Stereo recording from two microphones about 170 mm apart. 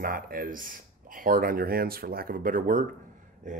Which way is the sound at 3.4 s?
45° right (ahead or behind).